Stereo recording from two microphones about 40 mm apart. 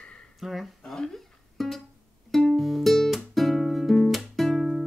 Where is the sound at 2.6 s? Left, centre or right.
Centre.